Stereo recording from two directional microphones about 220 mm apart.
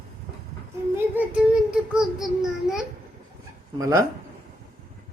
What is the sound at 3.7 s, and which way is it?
Speech, 15° right (ahead or behind).